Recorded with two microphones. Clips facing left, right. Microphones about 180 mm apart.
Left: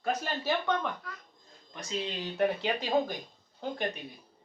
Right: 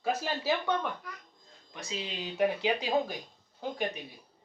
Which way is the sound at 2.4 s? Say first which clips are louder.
Right 1 dB; 5° right (ahead or behind).